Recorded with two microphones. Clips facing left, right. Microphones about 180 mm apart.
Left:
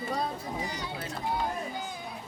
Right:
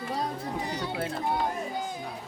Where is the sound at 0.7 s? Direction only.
55° right (ahead or behind).